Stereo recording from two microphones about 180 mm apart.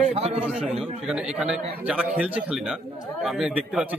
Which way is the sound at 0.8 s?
5° right (ahead or behind).